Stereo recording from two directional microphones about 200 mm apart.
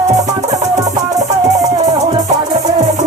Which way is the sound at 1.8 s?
35° right (ahead or behind).